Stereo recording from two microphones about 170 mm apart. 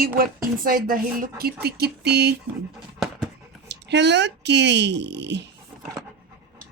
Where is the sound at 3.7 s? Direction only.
90° right.